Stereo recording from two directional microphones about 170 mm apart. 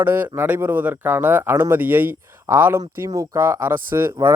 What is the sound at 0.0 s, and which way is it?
A man's voice, 15° right (ahead or behind).